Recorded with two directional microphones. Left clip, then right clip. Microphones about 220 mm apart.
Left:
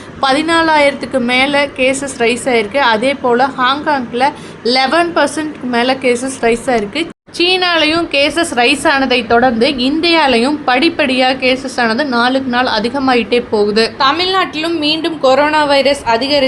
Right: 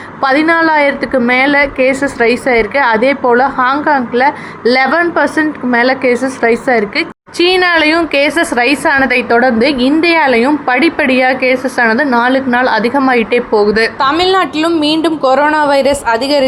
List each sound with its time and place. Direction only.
0.2 s a woman's voice: 15° right (ahead or behind)